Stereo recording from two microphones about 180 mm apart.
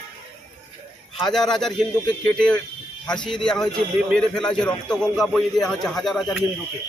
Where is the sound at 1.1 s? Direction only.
Centre (ahead or behind).